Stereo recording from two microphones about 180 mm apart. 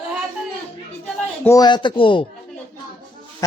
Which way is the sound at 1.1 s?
10° left (ahead or behind).